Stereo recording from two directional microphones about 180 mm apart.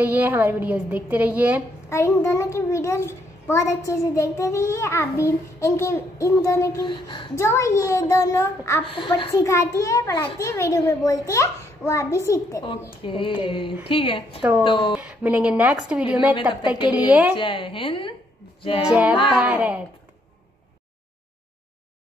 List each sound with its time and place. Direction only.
0.0 s a woman's voice: 10° right (ahead or behind)
1.9 s a child's voice: 15° left (ahead or behind)
7.3 s a child's voice: 15° left (ahead or behind)
8.8 s a sound: 30° left (ahead or behind)
9.3 s a child's voice: 15° left (ahead or behind)
13.0 s a sound: 30° left (ahead or behind)
15.0 s a woman's voice: 10° right (ahead or behind)
17.4 s a sound: 30° left (ahead or behind)
19.3 s a woman's voice: 10° right (ahead or behind)